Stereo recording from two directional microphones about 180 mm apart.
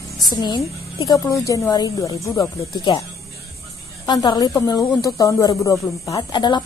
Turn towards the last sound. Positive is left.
turn(degrees=25)  # may be behind; listen again after turning